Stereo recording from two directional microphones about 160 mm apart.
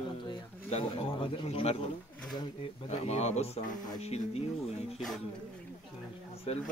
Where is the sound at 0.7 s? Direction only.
40° left (ahead or behind).